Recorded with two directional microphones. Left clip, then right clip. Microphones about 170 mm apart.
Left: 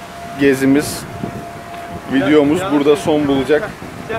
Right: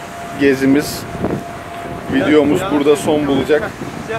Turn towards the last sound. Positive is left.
turn(degrees=0)  # may be behind; listen again after turning